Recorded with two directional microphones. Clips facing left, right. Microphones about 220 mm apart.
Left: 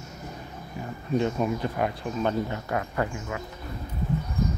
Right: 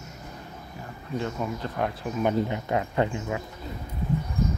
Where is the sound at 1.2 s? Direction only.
20° left (ahead or behind).